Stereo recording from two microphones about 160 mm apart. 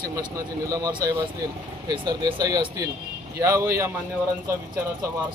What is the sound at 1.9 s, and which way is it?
Speech, 25° right (ahead or behind).